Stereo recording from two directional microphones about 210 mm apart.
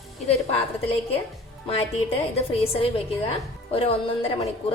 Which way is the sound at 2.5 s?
25° left (ahead or behind).